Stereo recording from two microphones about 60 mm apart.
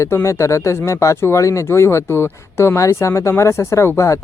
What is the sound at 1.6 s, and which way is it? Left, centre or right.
Speech, left.